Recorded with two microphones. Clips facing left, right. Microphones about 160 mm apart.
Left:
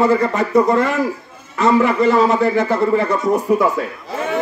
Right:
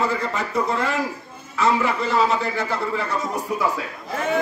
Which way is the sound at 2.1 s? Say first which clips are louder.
Left 7 dB; 50° left (ahead or behind).